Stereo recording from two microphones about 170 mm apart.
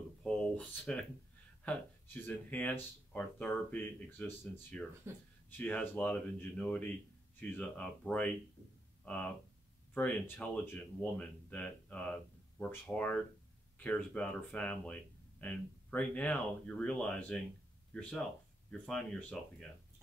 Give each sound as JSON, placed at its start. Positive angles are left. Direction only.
{"t": 0.2, "sound": "a sound", "side_deg": 5}
{"t": 1.6, "sound": "speech", "side_deg": 10}
{"t": 5.1, "sound": "speech", "side_deg": -15}
{"t": 5.6, "sound": "speech", "side_deg": 5}
{"t": 9.9, "sound": "speech", "side_deg": 10}
{"t": 18.7, "sound": "speech", "side_deg": 5}